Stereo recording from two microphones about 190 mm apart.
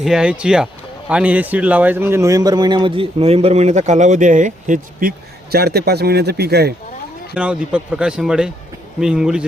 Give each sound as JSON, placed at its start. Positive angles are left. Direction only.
{"t": 0.0, "sound": "speech", "side_deg": -5}
{"t": 7.3, "sound": "a man's voice", "side_deg": -5}